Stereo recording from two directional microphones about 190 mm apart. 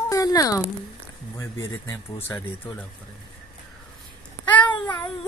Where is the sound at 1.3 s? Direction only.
15° left (ahead or behind).